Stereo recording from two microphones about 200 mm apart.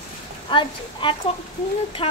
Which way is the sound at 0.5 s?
25° left (ahead or behind).